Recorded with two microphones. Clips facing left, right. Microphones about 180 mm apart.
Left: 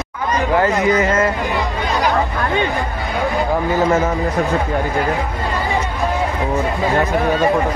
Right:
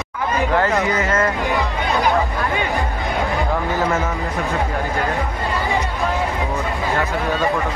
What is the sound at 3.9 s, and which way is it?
Speech, 35° left (ahead or behind).